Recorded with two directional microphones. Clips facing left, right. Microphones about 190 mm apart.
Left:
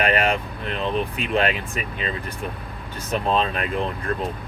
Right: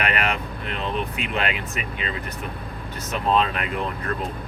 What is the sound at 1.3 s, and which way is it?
Speech, 35° left (ahead or behind).